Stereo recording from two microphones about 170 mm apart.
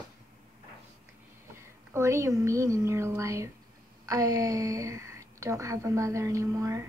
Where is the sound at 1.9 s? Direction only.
20° right (ahead or behind).